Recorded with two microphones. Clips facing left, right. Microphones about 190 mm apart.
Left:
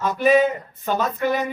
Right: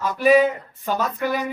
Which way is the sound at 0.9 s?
10° right (ahead or behind).